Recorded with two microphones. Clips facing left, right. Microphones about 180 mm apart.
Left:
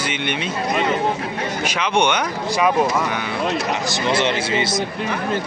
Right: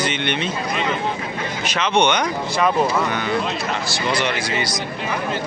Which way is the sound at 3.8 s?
20° left (ahead or behind).